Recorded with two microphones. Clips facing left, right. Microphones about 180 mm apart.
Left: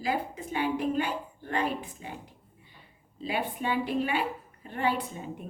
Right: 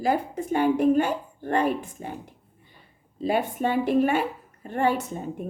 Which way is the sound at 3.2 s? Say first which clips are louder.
Right 7 dB; 45° right (ahead or behind).